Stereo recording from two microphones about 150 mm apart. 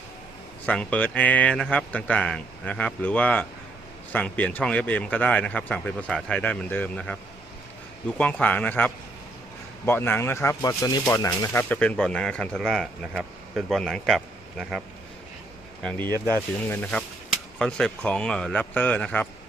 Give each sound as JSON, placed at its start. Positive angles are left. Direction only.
{"t": 0.6, "sound": "speech", "side_deg": 10}
{"t": 8.2, "sound": "a man's voice", "side_deg": 10}
{"t": 15.8, "sound": "a man's voice", "side_deg": 5}